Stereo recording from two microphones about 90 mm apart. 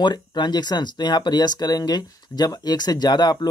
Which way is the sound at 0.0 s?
55° left (ahead or behind).